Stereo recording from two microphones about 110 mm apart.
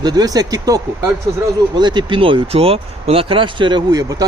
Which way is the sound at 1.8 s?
45° right (ahead or behind).